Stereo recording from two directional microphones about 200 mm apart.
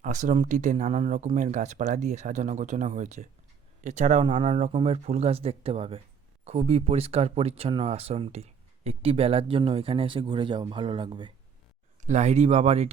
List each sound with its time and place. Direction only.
0.0 s speech: 40° right (ahead or behind)
12.0 s speech: 35° right (ahead or behind)